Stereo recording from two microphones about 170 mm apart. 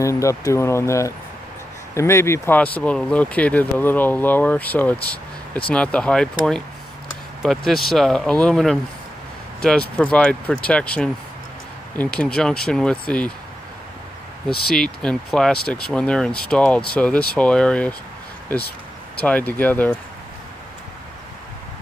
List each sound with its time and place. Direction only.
0.0 s speech: 15° left (ahead or behind)
14.7 s speech: 5° left (ahead or behind)
19.2 s speech: 10° left (ahead or behind)